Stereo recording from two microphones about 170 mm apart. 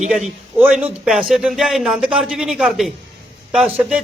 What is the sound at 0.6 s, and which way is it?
A man's voice, 5° right (ahead or behind).